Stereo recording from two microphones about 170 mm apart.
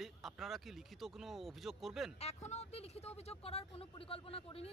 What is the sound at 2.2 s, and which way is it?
Speech, 40° left (ahead or behind).